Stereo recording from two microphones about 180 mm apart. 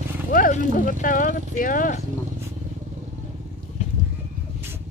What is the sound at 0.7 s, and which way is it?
Speech, 50° left (ahead or behind).